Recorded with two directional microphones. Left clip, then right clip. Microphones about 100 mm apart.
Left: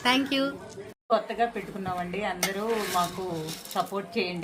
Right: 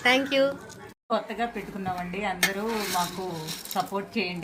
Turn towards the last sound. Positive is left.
turn(degrees=20)  # may be behind; listen again after turning